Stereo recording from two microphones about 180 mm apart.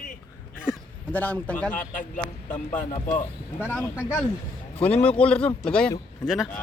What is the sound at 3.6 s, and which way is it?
Speech, 10° left (ahead or behind).